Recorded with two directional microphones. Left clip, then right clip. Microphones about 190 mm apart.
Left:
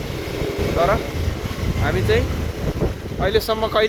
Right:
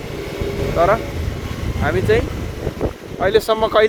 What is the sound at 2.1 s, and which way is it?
Speech, 65° right (ahead or behind).